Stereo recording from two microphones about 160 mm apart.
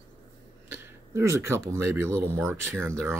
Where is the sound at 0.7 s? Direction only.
15° right (ahead or behind).